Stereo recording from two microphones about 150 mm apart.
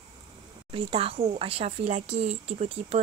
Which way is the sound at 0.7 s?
40° right (ahead or behind).